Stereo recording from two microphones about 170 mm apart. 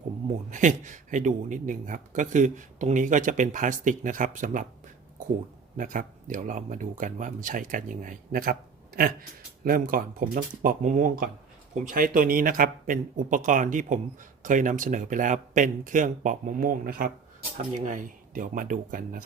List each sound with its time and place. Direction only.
0.5 s a man's voice: 45° right (ahead or behind)
5.7 s a man's voice: 50° right (ahead or behind)
9.6 s a man's voice: 55° right (ahead or behind)